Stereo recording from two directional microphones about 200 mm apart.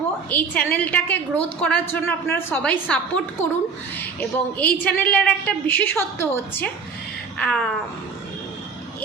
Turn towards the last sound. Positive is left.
turn(degrees=5)  # may be behind; listen again after turning